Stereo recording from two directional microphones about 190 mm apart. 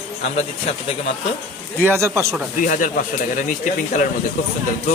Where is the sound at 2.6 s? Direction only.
45° left (ahead or behind).